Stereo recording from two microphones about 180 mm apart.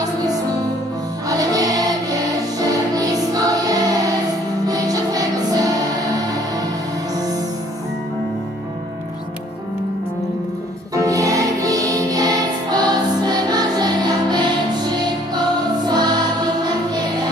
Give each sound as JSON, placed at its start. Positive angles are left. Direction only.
{"t": 0.0, "sound": "music", "side_deg": -20}
{"t": 11.0, "sound": "music", "side_deg": -20}